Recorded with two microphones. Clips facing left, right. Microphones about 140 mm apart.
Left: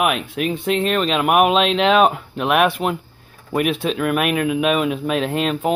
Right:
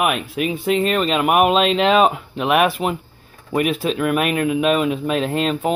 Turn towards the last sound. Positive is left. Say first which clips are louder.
# even
turn(degrees=0)  # may be behind; listen again after turning